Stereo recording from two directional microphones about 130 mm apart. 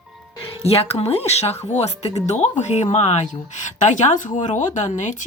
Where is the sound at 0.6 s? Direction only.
50° left (ahead or behind).